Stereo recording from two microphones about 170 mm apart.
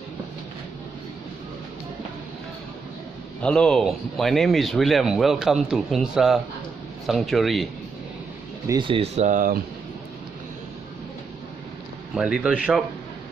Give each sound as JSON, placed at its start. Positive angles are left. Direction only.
{"t": 3.4, "sound": "speech", "side_deg": 5}
{"t": 8.6, "sound": "speech", "side_deg": -25}
{"t": 12.1, "sound": "speech", "side_deg": -5}